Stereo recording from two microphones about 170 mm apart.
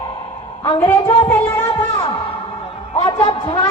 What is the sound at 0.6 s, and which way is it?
Speech, 20° left (ahead or behind).